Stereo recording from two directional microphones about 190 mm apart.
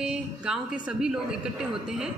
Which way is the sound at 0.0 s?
5° right (ahead or behind).